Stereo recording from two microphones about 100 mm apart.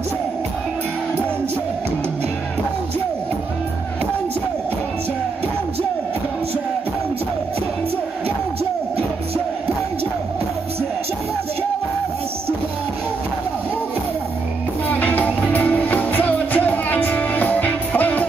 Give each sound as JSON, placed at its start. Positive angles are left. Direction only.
{"t": 14.9, "sound": "music", "side_deg": 15}